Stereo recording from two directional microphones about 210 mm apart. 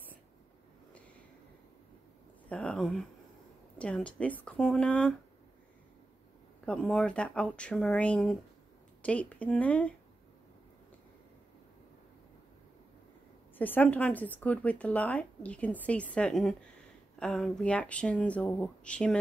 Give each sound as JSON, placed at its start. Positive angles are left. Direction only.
{"t": 2.5, "sound": "speech", "side_deg": 5}
{"t": 6.6, "sound": "a woman's voice", "side_deg": 5}
{"t": 13.6, "sound": "a woman's voice", "side_deg": 10}